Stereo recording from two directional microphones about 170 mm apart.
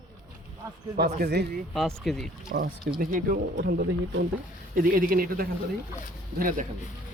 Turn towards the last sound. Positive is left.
turn(degrees=-50)  # may be behind; listen again after turning